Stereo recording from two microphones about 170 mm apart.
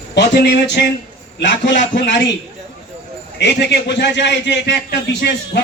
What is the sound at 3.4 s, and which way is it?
A man's voice, 85° left.